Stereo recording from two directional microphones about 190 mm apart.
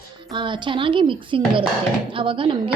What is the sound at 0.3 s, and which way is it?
A woman's voice, 25° right (ahead or behind).